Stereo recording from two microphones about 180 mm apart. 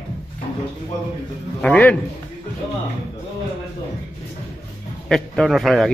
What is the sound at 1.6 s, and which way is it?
Speech, 10° left (ahead or behind).